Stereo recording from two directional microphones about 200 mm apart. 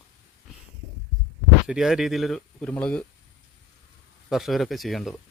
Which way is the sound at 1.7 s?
Centre (ahead or behind).